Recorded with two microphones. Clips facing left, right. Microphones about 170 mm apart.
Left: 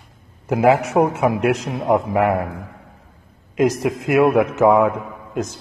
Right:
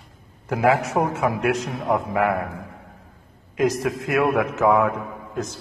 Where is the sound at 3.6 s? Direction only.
20° left (ahead or behind).